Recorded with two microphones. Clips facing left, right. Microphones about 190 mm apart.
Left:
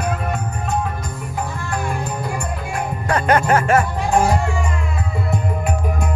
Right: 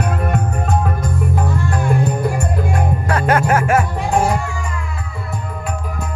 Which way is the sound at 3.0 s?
5° right (ahead or behind).